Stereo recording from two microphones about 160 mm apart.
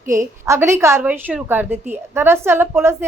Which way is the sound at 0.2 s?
15° right (ahead or behind).